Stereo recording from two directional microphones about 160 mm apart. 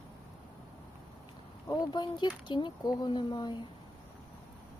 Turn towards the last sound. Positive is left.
turn(degrees=30)  # may be behind; listen again after turning